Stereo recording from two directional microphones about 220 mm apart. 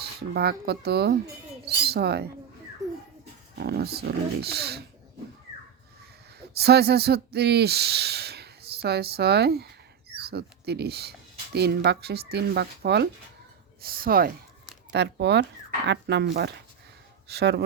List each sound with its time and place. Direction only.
0.0 s speech: 45° right (ahead or behind)
3.6 s speech: 45° right (ahead or behind)
6.5 s speech: 45° right (ahead or behind)